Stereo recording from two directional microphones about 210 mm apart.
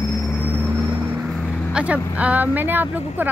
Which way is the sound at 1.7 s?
5° right (ahead or behind).